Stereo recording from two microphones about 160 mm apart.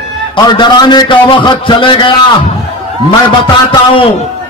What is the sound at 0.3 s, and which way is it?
A man's voice, 30° left (ahead or behind).